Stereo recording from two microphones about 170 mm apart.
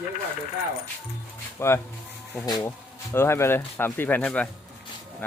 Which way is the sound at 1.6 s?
15° left (ahead or behind).